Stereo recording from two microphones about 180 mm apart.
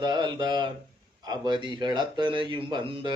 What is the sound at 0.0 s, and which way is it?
Speech, 25° right (ahead or behind).